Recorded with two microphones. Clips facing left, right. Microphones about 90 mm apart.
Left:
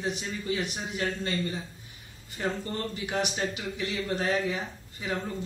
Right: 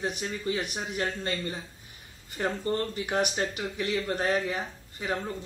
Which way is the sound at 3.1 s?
45° right (ahead or behind).